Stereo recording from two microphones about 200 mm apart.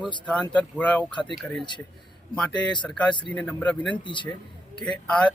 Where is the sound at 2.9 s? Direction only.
5° left (ahead or behind).